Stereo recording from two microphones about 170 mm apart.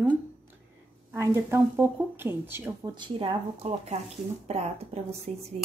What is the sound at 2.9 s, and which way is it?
A woman's voice, 30° right (ahead or behind).